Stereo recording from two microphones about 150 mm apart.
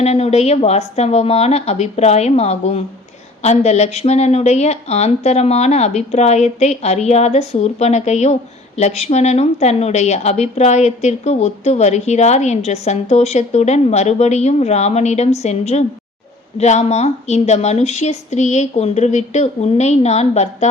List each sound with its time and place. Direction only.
0.0 s speech: 45° left (ahead or behind)